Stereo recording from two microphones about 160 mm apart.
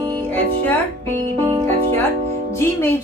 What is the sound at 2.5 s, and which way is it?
Speech, 15° left (ahead or behind).